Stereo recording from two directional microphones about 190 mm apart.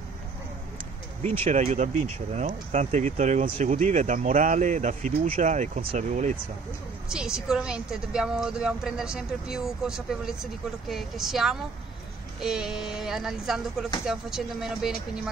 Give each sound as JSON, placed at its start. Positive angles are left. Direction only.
{"t": 1.4, "sound": "speech", "side_deg": -35}
{"t": 7.1, "sound": "a woman's voice", "side_deg": -5}